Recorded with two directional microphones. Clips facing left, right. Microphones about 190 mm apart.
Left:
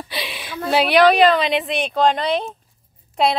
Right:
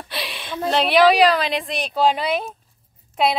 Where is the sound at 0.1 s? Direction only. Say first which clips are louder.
Right 3 dB; centre (ahead or behind).